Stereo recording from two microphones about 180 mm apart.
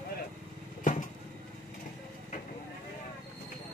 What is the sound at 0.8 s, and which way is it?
Vehicle, 45° left (ahead or behind).